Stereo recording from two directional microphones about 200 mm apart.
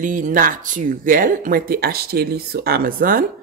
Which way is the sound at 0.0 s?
40° right (ahead or behind).